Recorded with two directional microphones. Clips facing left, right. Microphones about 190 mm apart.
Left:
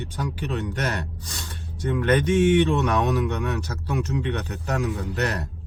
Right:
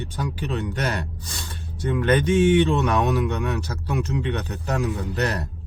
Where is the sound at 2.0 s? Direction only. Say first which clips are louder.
Right 1 dB; 30° right (ahead or behind).